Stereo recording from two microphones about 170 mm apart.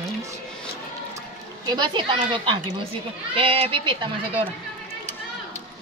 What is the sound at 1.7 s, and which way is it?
A woman's voice, 25° right (ahead or behind).